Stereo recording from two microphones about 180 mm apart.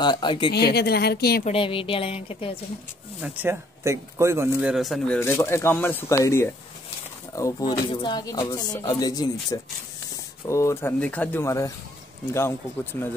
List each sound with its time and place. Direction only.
0.0 s speech: 25° left (ahead or behind)
0.5 s a woman's voice: 60° left (ahead or behind)
1.4 s speech: 30° left (ahead or behind)
3.2 s a man's voice: 10° right (ahead or behind); by 13.1 s 15° left (ahead or behind)